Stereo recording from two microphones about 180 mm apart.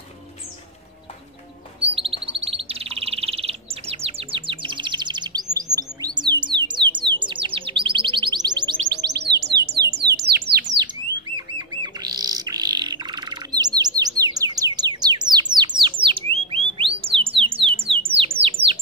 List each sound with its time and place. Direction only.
1.8 s bird: 30° right (ahead or behind)
8.7 s bird: 70° right (ahead or behind)
9.8 s a sound: 65° right (ahead or behind)
11.3 s bird: 25° right (ahead or behind)
16.0 s a sound: 30° right (ahead or behind)
18.4 s bird: 30° right (ahead or behind)